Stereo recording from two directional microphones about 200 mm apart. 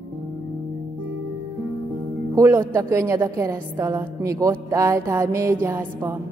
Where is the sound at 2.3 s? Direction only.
15° right (ahead or behind).